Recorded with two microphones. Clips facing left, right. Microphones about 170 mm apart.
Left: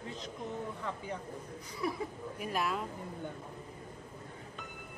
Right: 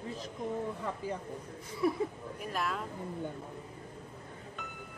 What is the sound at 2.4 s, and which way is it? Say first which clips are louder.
Speech: left 1 dB; 5° left (ahead or behind).